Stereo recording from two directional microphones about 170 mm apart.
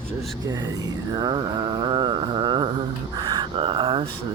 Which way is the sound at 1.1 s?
25° right (ahead or behind).